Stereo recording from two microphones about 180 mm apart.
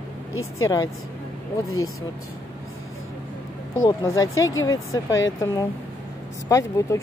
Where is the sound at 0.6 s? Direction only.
20° left (ahead or behind).